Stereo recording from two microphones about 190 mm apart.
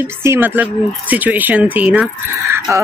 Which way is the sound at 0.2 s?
10° right (ahead or behind).